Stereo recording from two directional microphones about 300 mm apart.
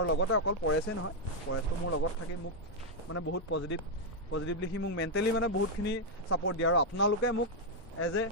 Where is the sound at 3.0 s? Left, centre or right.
Left.